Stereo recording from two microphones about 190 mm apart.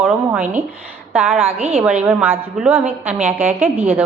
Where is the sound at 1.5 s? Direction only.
30° right (ahead or behind).